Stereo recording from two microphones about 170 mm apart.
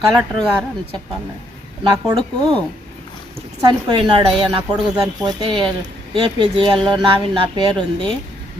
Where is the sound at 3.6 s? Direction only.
25° right (ahead or behind).